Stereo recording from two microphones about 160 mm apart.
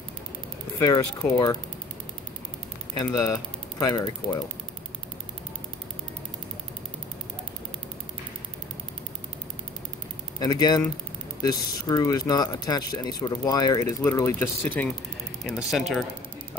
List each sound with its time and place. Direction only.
0.7 s speech: 20° left (ahead or behind)
3.0 s speech: 25° left (ahead or behind)
10.4 s speech: 25° left (ahead or behind); by 16.1 s centre (ahead or behind)